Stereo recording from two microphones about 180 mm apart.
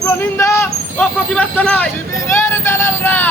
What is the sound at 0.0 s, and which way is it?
Speech, 15° left (ahead or behind).